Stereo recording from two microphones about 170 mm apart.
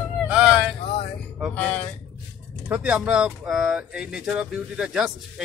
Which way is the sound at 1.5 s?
10° left (ahead or behind).